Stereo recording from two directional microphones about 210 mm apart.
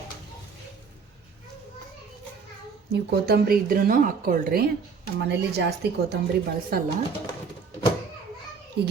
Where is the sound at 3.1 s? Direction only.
45° right (ahead or behind).